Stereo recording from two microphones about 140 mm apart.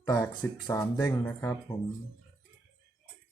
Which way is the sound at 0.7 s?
15° left (ahead or behind).